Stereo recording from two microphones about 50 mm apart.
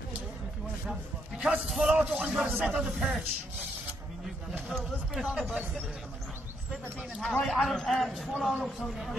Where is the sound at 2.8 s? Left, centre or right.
Centre.